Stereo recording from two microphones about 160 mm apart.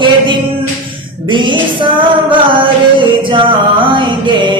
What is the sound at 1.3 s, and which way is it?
Music, 30° right (ahead or behind).